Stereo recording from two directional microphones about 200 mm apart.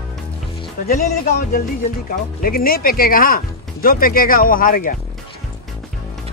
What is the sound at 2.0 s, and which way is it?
Speech, 45° left (ahead or behind).